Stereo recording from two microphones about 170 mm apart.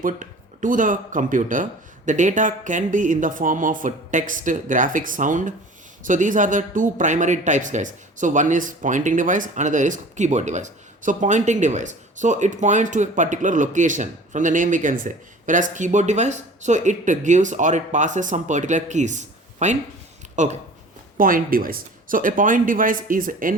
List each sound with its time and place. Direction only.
0.0 s speech: 50° right (ahead or behind)
21.2 s speech: 55° right (ahead or behind)